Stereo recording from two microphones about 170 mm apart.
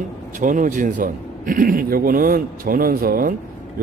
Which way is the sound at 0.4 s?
50° right (ahead or behind).